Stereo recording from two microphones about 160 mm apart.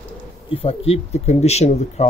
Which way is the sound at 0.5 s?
40° left (ahead or behind).